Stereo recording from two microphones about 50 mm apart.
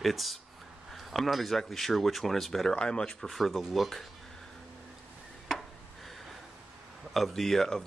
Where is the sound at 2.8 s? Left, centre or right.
Centre.